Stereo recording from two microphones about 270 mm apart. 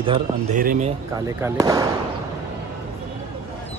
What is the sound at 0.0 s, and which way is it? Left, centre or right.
Speech, centre.